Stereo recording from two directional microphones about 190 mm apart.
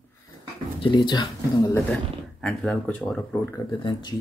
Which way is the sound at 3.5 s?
20° left (ahead or behind).